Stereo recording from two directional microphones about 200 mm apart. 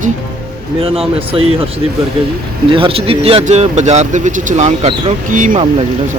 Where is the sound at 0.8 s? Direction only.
30° right (ahead or behind).